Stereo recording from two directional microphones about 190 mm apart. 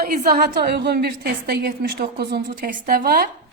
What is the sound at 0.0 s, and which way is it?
A woman's voice, 50° right (ahead or behind).